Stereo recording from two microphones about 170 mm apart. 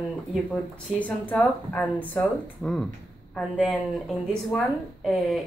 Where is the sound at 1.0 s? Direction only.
10° left (ahead or behind).